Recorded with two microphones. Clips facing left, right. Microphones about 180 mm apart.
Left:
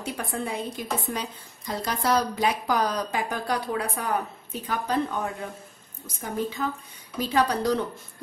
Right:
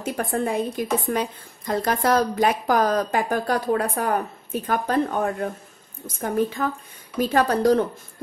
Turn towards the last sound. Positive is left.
turn(degrees=-50)  # may be behind; listen again after turning